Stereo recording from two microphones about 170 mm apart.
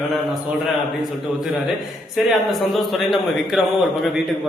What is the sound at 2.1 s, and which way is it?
A man's voice, centre (ahead or behind).